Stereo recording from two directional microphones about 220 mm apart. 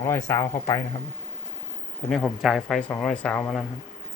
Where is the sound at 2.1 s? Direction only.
Centre (ahead or behind).